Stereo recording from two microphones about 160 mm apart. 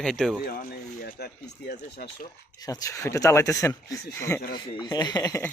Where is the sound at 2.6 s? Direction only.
20° left (ahead or behind).